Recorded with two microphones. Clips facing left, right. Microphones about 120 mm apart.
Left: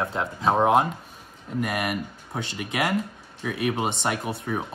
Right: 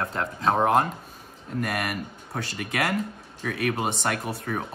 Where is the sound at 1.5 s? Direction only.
10° left (ahead or behind).